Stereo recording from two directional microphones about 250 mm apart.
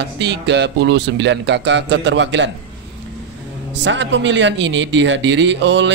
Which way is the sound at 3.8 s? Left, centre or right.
Right.